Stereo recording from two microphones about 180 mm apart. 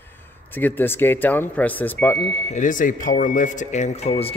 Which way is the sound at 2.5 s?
45° left (ahead or behind).